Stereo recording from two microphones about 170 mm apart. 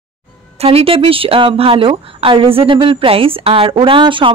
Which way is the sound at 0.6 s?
35° right (ahead or behind).